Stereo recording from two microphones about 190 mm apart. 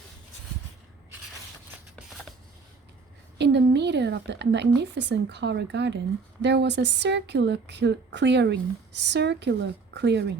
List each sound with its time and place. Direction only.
3.3 s a woman's voice: 65° right (ahead or behind)